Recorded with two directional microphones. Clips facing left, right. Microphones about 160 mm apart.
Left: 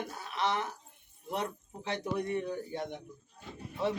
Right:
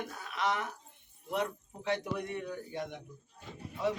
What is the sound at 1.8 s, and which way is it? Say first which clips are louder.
A man's voice: left 1 dB; 30° left (ahead or behind).